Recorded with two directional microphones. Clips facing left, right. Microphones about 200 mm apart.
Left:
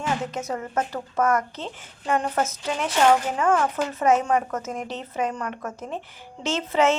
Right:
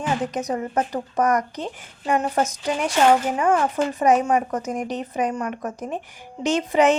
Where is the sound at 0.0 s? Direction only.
15° right (ahead or behind).